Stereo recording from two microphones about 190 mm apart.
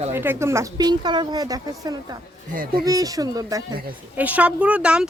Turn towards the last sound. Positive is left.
turn(degrees=-5)  # may be behind; listen again after turning